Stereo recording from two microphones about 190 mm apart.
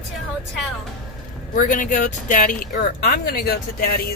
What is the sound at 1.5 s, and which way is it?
Speech, 45° left (ahead or behind).